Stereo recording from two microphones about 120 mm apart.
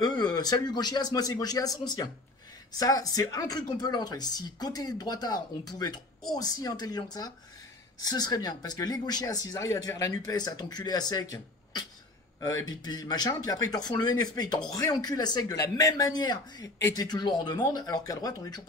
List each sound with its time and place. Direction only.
0.0 s speech: 35° left (ahead or behind)